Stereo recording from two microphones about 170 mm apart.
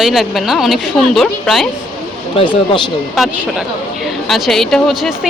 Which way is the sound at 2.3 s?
30° left (ahead or behind).